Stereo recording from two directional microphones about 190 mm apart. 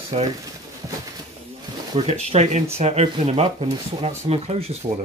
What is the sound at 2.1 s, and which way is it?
Speech, 35° right (ahead or behind).